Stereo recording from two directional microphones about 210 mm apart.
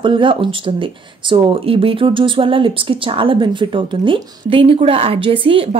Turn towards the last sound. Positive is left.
turn(degrees=-25)  # may be behind; listen again after turning